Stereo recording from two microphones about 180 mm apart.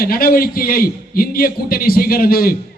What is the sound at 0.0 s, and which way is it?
A man's voice, 55° left (ahead or behind).